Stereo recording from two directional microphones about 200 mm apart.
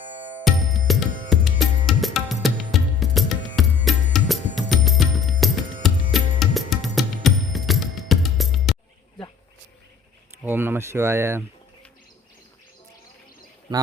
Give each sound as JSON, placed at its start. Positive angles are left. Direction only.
{"t": 0.4, "sound": "music", "side_deg": 0}
{"t": 10.4, "sound": "speech", "side_deg": -10}